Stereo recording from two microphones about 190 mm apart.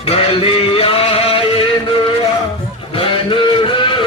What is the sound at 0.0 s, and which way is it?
Music, 30° left (ahead or behind).